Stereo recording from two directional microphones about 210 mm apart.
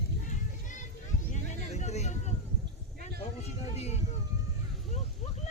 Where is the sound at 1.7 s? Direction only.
30° left (ahead or behind).